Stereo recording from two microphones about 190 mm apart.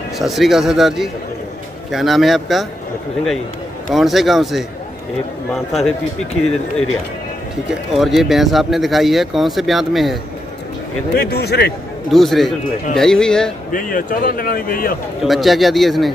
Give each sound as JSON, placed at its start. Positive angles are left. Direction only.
{"t": 0.2, "sound": "speech", "side_deg": 0}
{"t": 3.9, "sound": "speech", "side_deg": 0}
{"t": 7.9, "sound": "speech", "side_deg": 0}
{"t": 11.1, "sound": "a man's voice", "side_deg": 55}
{"t": 12.1, "sound": "speech", "side_deg": 0}
{"t": 13.7, "sound": "speech", "side_deg": 45}
{"t": 15.2, "sound": "speech", "side_deg": 0}